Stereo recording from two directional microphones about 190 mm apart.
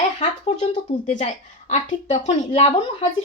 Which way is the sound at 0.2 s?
30° left (ahead or behind).